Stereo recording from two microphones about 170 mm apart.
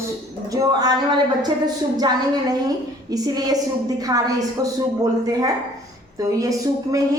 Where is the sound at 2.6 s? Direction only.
20° right (ahead or behind).